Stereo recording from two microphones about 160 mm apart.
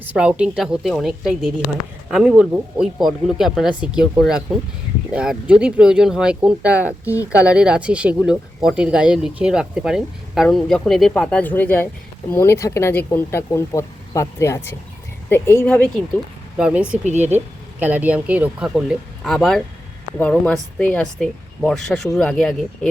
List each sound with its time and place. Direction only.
0.0 s speech: 10° right (ahead or behind); by 15.8 s 10° left (ahead or behind)
16.6 s speech: 5° right (ahead or behind)
17.0 s speech: 45° right (ahead or behind)
17.7 s speech: 10° right (ahead or behind)